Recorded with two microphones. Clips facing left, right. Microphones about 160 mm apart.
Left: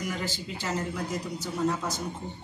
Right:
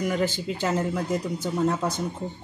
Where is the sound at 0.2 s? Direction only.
55° right (ahead or behind).